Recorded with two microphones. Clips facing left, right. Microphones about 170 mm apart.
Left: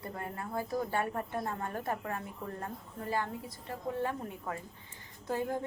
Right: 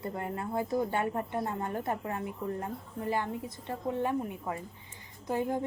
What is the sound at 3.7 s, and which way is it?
A woman's voice, 20° right (ahead or behind).